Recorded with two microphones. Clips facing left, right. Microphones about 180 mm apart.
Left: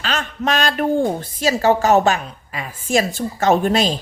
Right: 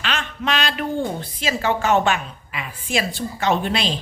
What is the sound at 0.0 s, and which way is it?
A woman's voice, 40° left (ahead or behind).